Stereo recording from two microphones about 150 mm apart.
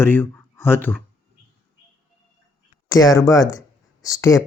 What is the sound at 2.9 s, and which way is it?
Speech, 25° left (ahead or behind).